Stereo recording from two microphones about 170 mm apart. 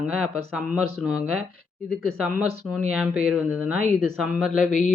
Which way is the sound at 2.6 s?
5° right (ahead or behind).